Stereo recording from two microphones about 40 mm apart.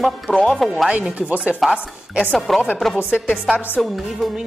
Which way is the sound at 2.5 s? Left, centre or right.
Centre.